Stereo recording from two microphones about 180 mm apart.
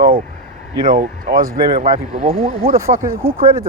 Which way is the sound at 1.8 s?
30° right (ahead or behind).